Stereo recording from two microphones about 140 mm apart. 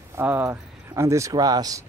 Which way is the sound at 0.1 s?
15° right (ahead or behind).